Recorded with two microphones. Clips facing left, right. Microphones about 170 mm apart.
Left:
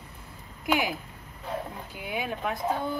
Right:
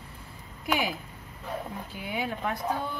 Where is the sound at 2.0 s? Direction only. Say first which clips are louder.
Left 1 dB; 10° left (ahead or behind).